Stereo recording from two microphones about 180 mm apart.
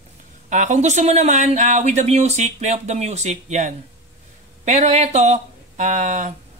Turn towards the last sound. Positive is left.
turn(degrees=-40)  # may be behind; listen again after turning